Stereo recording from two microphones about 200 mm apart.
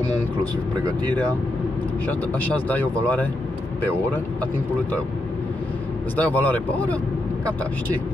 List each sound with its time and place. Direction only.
2.4 s speech: 5° left (ahead or behind)
6.3 s speech: 5° left (ahead or behind)